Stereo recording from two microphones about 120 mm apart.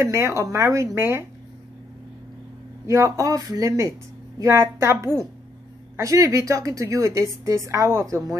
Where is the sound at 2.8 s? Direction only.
25° right (ahead or behind).